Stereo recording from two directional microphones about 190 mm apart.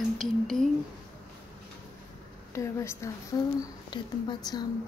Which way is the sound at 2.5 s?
15° left (ahead or behind).